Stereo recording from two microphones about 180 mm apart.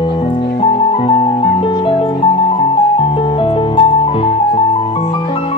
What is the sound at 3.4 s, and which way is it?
Music, 30° left (ahead or behind).